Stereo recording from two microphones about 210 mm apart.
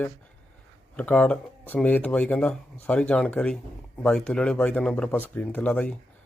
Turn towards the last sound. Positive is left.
turn(degrees=5)  # may be behind; listen again after turning